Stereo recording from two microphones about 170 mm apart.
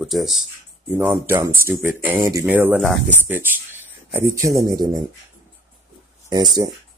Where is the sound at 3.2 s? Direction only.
10° right (ahead or behind).